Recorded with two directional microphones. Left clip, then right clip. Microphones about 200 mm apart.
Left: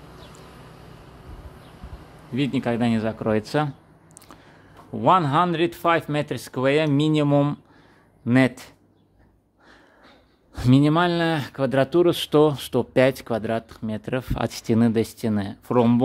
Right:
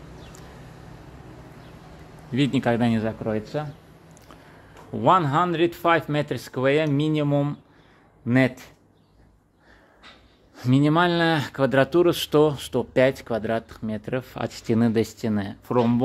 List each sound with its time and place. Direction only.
2.3 s speech: centre (ahead or behind)
3.2 s speech: 25° left (ahead or behind)
4.9 s speech: 10° left (ahead or behind); by 7.5 s 25° left (ahead or behind)
8.3 s speech: 10° left (ahead or behind)
10.7 s speech: 10° left (ahead or behind)